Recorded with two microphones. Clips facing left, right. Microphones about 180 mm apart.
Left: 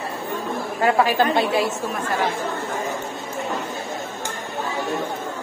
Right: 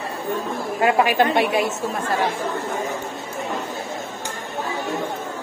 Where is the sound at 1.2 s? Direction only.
20° right (ahead or behind).